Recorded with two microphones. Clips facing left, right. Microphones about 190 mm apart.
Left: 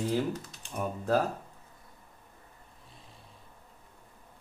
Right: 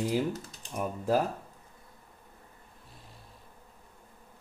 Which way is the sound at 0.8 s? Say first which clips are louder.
Even; 10° right (ahead or behind).